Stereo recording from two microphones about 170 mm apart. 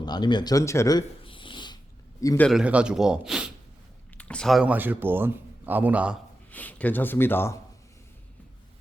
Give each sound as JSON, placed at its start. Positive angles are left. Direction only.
{"t": 0.0, "sound": "a sound", "side_deg": 25}
{"t": 2.2, "sound": "speech", "side_deg": 15}
{"t": 2.5, "sound": "a man's voice", "side_deg": -5}
{"t": 6.5, "sound": "speech", "side_deg": 10}